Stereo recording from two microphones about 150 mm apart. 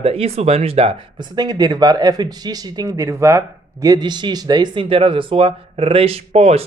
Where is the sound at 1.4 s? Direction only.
25° right (ahead or behind).